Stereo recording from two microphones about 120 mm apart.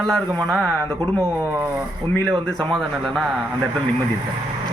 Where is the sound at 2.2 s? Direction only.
5° left (ahead or behind).